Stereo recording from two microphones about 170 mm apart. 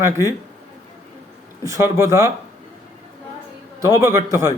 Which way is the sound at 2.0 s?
15° right (ahead or behind).